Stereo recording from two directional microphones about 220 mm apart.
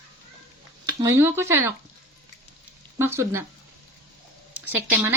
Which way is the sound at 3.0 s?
10° right (ahead or behind).